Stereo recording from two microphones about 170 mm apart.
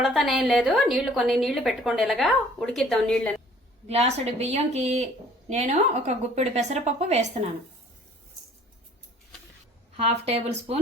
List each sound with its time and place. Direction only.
0.0 s a woman's voice: centre (ahead or behind)
3.8 s a woman's voice: 40° right (ahead or behind)
10.0 s a woman's voice: 40° right (ahead or behind)